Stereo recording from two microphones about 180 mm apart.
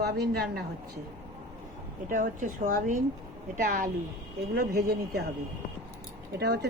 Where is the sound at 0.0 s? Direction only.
65° right (ahead or behind).